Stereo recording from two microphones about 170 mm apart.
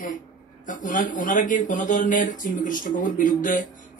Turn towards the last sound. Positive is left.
turn(degrees=50)  # may be behind; listen again after turning